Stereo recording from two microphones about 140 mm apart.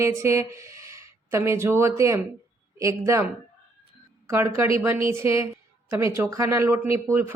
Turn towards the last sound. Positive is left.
turn(degrees=-20)  # may be behind; listen again after turning